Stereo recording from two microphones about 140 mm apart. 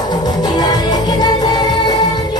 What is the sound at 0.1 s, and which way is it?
Music, 30° left (ahead or behind).